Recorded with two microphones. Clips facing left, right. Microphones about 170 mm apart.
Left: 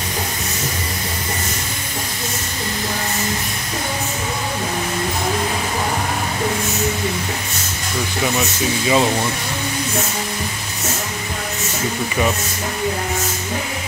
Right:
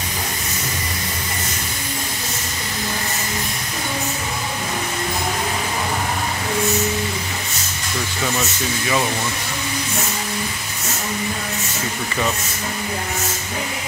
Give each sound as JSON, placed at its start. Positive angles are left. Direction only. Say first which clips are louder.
{"t": 8.4, "sound": "speech", "louder": "left 3 dB", "side_deg": 20}